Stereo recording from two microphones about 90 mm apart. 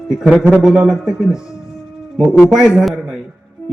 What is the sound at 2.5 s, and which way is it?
Speech, 5° right (ahead or behind).